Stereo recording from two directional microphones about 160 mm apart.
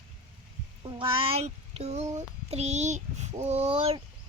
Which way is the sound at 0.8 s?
30° right (ahead or behind).